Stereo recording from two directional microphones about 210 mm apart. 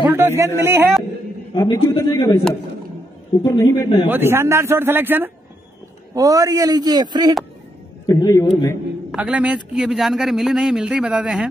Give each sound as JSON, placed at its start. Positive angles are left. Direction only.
{"t": 0.0, "sound": "a sound", "side_deg": -10}
{"t": 0.6, "sound": "speech", "side_deg": -10}
{"t": 1.5, "sound": "a man's voice", "side_deg": 15}
{"t": 3.4, "sound": "a man's voice", "side_deg": 15}
{"t": 4.1, "sound": "a man's voice", "side_deg": -10}
{"t": 8.1, "sound": "a man's voice", "side_deg": 15}
{"t": 9.1, "sound": "a man's voice", "side_deg": -5}